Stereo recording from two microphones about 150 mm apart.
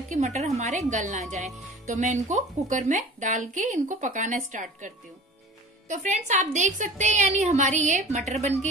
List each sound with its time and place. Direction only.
0.1 s a woman's voice: 50° right (ahead or behind)